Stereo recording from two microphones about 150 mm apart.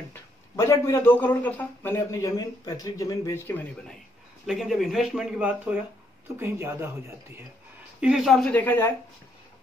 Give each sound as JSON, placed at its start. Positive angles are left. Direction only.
{"t": 0.1, "sound": "a man's voice", "side_deg": 20}
{"t": 4.5, "sound": "speech", "side_deg": 0}
{"t": 8.0, "sound": "speech", "side_deg": -5}